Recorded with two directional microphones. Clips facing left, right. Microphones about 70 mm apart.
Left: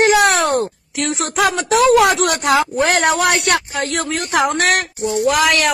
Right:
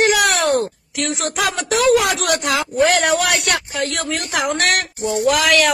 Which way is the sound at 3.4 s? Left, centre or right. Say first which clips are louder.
Left 3 dB; left.